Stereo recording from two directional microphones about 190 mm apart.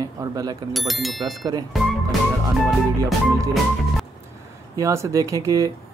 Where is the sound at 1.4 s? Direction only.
20° right (ahead or behind).